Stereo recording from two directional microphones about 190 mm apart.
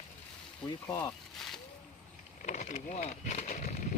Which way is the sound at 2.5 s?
40° left (ahead or behind).